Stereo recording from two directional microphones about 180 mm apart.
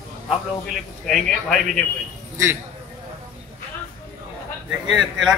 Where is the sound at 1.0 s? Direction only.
5° left (ahead or behind).